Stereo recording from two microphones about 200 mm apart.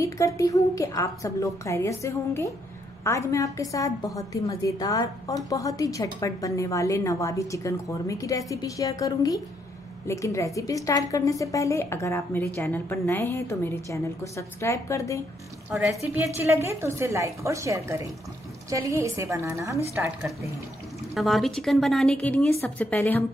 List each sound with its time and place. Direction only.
0.0 s a woman's voice: 15° left (ahead or behind)
15.7 s a woman's voice: 5° right (ahead or behind)